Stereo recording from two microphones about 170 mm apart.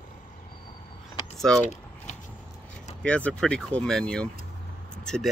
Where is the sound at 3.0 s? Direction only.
5° left (ahead or behind).